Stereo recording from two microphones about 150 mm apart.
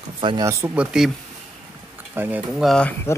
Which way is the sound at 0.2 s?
35° right (ahead or behind).